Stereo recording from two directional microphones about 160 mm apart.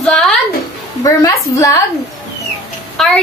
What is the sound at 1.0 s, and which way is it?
Speech, 20° left (ahead or behind).